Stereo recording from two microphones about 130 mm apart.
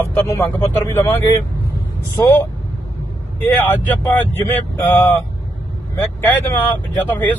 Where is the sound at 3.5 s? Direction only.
15° left (ahead or behind).